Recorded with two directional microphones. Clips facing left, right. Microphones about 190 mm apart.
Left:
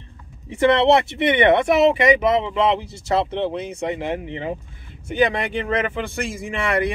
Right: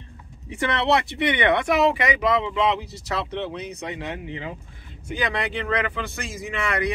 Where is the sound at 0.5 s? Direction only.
25° left (ahead or behind).